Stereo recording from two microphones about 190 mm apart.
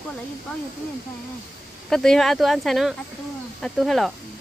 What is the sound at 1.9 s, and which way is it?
Speech, centre (ahead or behind).